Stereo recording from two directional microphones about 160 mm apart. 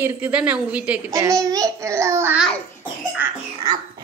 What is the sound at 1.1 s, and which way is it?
A child's voice, 20° right (ahead or behind).